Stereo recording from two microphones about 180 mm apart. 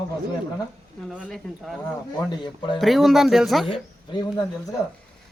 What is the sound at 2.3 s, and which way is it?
Speech, 25° left (ahead or behind).